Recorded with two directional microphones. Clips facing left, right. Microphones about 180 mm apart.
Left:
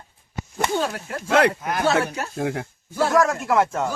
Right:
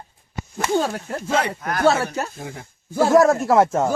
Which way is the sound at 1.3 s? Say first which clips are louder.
Left 4 dB; 75° left (ahead or behind).